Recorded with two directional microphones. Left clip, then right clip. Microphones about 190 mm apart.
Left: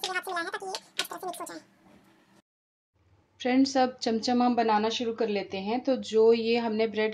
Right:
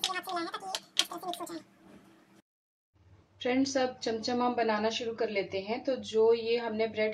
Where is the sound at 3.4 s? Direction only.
45° left (ahead or behind).